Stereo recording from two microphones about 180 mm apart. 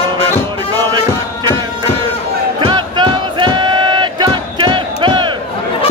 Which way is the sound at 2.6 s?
25° right (ahead or behind).